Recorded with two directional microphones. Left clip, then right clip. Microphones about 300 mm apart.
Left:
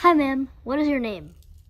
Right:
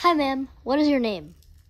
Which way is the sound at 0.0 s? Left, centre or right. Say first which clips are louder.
Left 2 dB; centre.